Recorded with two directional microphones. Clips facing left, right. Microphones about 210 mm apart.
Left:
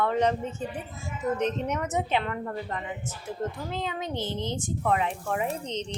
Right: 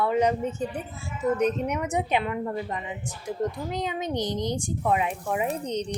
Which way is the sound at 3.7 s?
20° right (ahead or behind).